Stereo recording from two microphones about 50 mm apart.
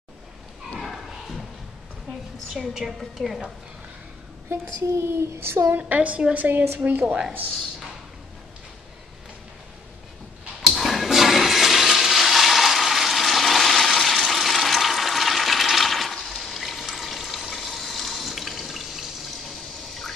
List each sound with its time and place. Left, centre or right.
0.7 s horse: centre
2.5 s a woman's voice: centre
4.5 s a woman's voice: right
5.8 s a woman's voice: right
10.7 s toilet flush: centre